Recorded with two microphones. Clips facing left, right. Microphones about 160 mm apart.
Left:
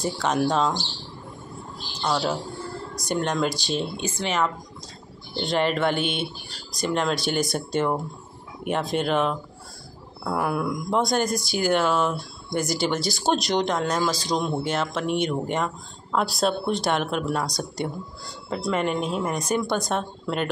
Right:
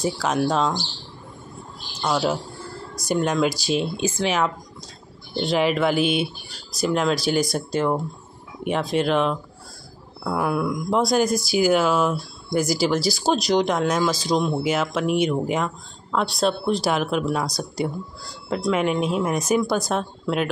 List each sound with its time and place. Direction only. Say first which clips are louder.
0.0 s speech: right 1 dB; centre (ahead or behind)
2.0 s speech: right 2 dB; 5° right (ahead or behind)
5.4 s speech: right 2 dB; 5° right (ahead or behind)